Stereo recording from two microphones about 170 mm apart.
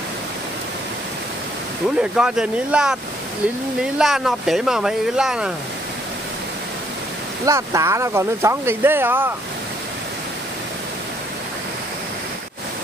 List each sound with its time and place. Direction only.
2.0 s speech: 5° right (ahead or behind)
7.4 s speech: 20° right (ahead or behind)